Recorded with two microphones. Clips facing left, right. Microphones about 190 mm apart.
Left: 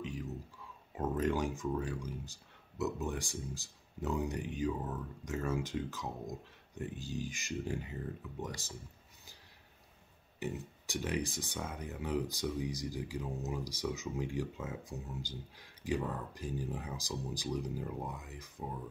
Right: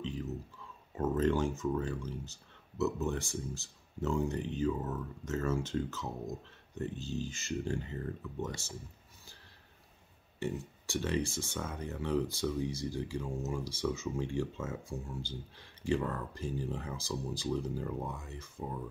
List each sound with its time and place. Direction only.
0.0 s a sound: 15° left (ahead or behind)
0.9 s speech: 10° left (ahead or behind)
10.4 s speech: 15° left (ahead or behind)